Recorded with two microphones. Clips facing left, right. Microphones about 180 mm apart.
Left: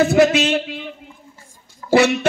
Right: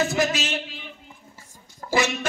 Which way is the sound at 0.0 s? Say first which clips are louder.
Left 10 dB; 60° left (ahead or behind).